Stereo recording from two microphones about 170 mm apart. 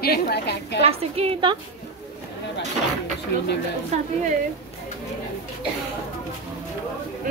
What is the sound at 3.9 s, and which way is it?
Speech, 45° right (ahead or behind).